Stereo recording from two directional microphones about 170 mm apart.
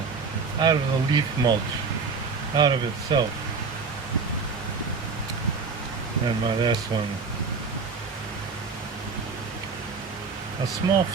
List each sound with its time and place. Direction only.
0.6 s speech: 25° right (ahead or behind)
2.6 s speech: 25° right (ahead or behind)
6.2 s speech: 25° right (ahead or behind)
10.8 s speech: 25° right (ahead or behind)